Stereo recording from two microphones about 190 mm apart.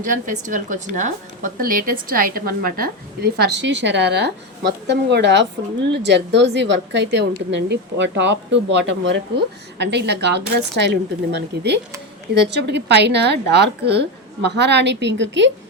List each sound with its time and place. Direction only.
0.0 s a woman's voice: 45° right (ahead or behind)
3.3 s a woman's voice: 60° right (ahead or behind)